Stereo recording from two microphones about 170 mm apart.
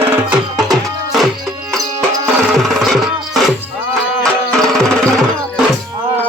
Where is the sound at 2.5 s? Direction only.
Centre (ahead or behind).